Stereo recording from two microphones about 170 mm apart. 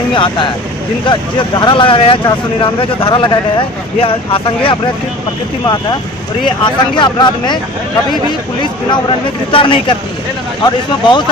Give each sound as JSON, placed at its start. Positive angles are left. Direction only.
{"t": 0.1, "sound": "speech", "side_deg": 30}
{"t": 6.7, "sound": "speech", "side_deg": 25}
{"t": 8.9, "sound": "speech", "side_deg": 30}